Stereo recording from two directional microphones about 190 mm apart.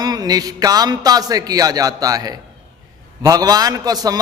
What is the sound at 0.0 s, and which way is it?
A man's voice, 20° right (ahead or behind).